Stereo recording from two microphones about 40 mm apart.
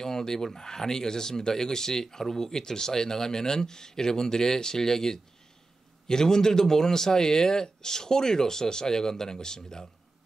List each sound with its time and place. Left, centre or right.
0.0 s speech: centre